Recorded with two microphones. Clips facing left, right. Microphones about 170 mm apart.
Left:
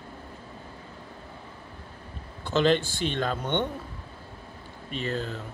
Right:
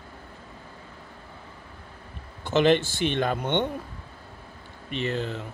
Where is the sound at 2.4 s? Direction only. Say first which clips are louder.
Right 2 dB; 15° right (ahead or behind).